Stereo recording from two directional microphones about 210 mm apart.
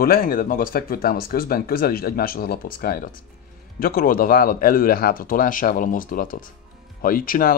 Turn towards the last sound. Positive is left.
turn(degrees=45)  # may be behind; listen again after turning